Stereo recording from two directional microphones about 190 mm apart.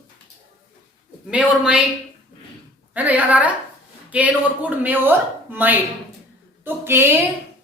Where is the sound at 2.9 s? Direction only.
10° right (ahead or behind).